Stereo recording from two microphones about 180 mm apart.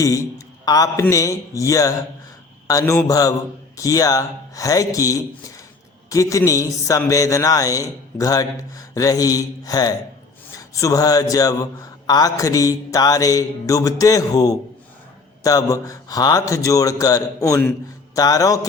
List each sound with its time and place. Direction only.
0.0 s a man's voice: 20° left (ahead or behind)